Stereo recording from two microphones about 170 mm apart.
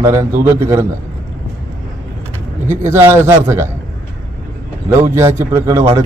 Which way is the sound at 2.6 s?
15° right (ahead or behind).